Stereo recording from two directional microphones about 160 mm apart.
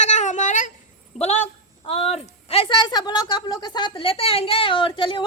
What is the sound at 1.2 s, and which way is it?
A woman's voice, 45° left (ahead or behind).